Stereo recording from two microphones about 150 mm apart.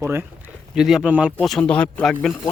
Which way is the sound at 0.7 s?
5° right (ahead or behind).